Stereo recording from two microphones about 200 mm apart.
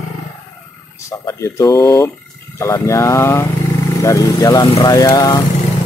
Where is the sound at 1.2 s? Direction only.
15° left (ahead or behind).